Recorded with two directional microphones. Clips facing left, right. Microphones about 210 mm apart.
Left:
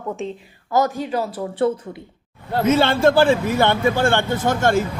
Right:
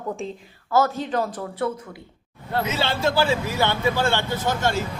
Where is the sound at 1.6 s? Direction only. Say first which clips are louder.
Left 7 dB; 30° left (ahead or behind).